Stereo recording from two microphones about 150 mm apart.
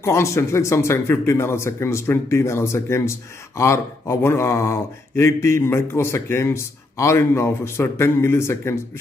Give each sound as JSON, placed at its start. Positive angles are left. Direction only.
{"t": 0.0, "sound": "speech", "side_deg": 20}